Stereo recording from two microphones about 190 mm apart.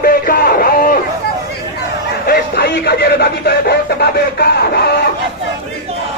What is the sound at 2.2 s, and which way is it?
Speech, 55° left (ahead or behind).